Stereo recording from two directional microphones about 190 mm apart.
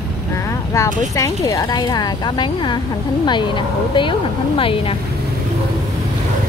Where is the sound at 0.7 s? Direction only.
15° left (ahead or behind).